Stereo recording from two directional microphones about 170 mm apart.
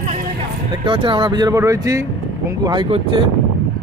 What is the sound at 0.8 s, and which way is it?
Speech, 30° right (ahead or behind).